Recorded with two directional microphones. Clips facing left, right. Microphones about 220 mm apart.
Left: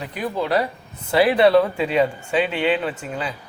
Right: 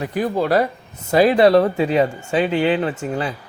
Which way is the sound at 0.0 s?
45° right (ahead or behind).